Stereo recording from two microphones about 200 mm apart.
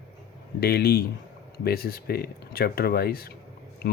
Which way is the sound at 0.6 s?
50° left (ahead or behind).